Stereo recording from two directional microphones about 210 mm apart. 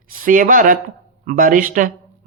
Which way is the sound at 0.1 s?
40° right (ahead or behind).